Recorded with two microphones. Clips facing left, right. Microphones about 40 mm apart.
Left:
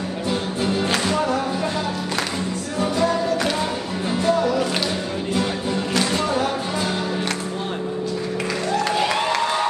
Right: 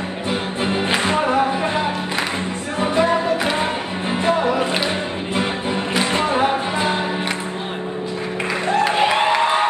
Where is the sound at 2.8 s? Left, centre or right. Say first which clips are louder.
Right 3 dB; right.